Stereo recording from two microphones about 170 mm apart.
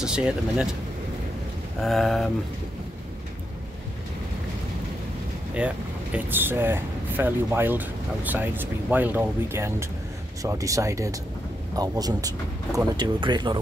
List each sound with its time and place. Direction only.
0.0 s speech: 5° right (ahead or behind)
1.8 s speech: centre (ahead or behind)
6.1 s speech: 10° right (ahead or behind); by 13.6 s 25° right (ahead or behind)